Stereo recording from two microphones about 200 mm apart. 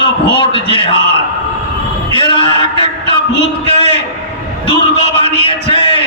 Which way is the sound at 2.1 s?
25° left (ahead or behind).